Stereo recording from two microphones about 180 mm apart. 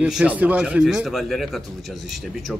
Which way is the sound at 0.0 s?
5° right (ahead or behind).